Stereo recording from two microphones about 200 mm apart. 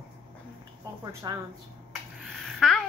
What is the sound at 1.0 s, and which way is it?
Speech, 20° right (ahead or behind).